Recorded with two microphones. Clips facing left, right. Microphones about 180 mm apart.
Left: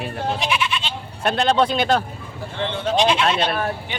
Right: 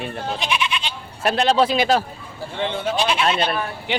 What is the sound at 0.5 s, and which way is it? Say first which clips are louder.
Goat: even; 15° right (ahead or behind).